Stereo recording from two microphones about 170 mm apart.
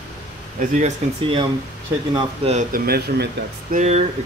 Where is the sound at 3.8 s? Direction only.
40° right (ahead or behind).